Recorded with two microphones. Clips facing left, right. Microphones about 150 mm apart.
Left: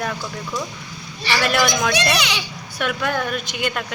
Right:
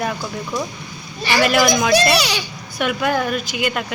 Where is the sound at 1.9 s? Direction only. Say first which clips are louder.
Right 5 dB; 35° right (ahead or behind).